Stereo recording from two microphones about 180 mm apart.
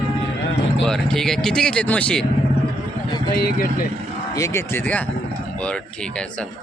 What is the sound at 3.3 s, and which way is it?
Speech, 60° left (ahead or behind).